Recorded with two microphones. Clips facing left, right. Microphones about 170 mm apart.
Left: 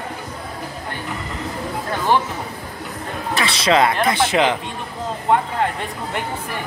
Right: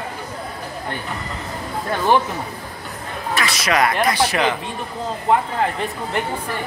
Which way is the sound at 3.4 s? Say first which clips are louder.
Left 3 dB; 25° left (ahead or behind).